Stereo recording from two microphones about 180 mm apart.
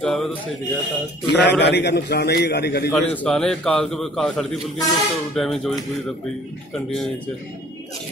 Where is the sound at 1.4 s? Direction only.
70° left (ahead or behind).